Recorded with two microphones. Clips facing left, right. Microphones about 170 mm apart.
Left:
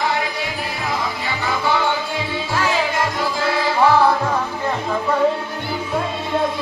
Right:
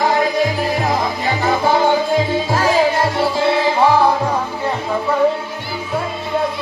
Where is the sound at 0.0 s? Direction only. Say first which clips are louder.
Right 7 dB; 40° right (ahead or behind).